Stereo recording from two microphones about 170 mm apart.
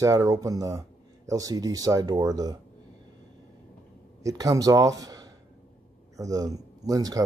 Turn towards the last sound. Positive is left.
turn(degrees=-20)  # may be behind; listen again after turning